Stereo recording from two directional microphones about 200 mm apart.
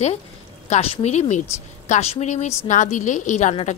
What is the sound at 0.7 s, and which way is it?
A woman's voice, 30° left (ahead or behind).